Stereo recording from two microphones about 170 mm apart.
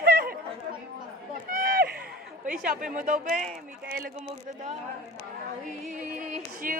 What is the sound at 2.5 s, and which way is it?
Speech, 55° right (ahead or behind).